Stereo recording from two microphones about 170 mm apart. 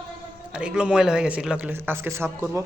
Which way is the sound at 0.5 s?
5° right (ahead or behind).